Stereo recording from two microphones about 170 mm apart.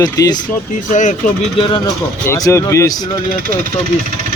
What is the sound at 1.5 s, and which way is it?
Speech, 30° left (ahead or behind).